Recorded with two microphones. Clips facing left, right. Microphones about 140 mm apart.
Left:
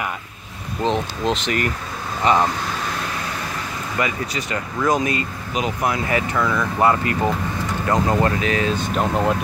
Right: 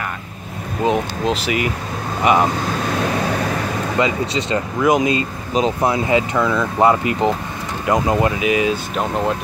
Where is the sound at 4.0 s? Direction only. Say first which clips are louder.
Right 4 dB; 25° right (ahead or behind).